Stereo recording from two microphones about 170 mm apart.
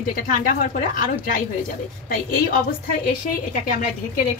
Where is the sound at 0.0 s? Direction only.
55° left (ahead or behind).